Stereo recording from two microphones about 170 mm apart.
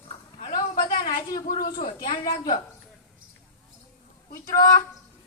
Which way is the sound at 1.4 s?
55° left (ahead or behind).